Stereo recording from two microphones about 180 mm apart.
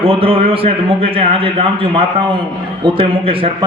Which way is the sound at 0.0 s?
30° right (ahead or behind).